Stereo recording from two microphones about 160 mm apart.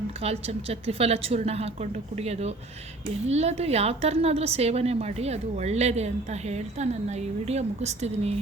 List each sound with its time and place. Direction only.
0.2 s a woman's voice: 40° right (ahead or behind)